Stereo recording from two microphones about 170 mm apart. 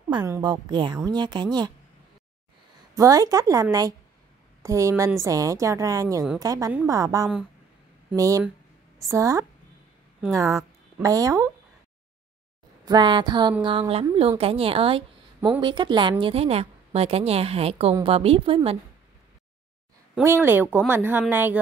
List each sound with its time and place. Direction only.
0.2 s a woman's voice: 20° right (ahead or behind)
3.0 s a woman's voice: 20° right (ahead or behind)
4.6 s a woman's voice: 20° right (ahead or behind)
12.8 s a woman's voice: 25° right (ahead or behind)
20.2 s speech: 15° right (ahead or behind)